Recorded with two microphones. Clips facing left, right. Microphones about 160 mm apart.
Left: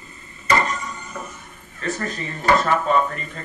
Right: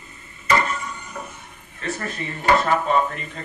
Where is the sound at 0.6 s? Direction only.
35° left (ahead or behind).